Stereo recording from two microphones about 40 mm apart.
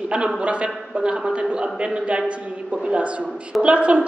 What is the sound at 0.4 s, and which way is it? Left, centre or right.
A man's voice, right.